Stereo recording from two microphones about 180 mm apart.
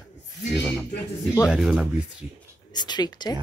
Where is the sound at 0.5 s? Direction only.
10° left (ahead or behind).